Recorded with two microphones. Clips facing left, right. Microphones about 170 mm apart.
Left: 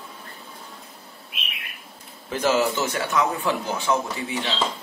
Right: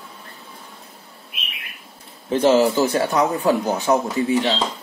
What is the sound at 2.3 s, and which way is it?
A man's voice, 30° right (ahead or behind).